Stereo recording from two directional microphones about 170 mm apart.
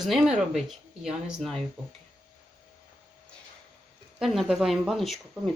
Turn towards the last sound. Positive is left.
turn(degrees=0)  # may be behind; listen again after turning